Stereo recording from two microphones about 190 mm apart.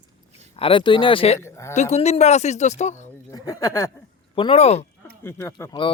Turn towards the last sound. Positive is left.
turn(degrees=20)  # may be behind; listen again after turning